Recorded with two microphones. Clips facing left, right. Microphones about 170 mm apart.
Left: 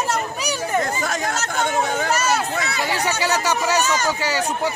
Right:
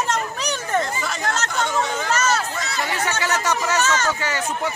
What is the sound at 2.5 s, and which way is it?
Chatter, 60° left (ahead or behind).